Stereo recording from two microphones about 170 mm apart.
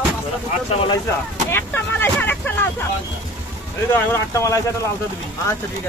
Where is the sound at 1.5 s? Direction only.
15° left (ahead or behind).